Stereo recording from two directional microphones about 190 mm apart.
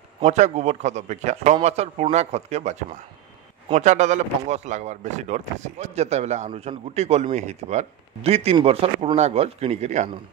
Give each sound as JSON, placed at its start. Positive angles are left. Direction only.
{"t": 0.2, "sound": "speech", "side_deg": -35}